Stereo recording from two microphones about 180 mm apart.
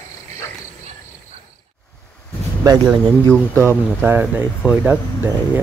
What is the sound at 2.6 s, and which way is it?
Speech, 15° right (ahead or behind).